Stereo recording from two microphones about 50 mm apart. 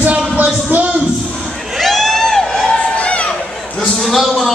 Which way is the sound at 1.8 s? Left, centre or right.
Centre.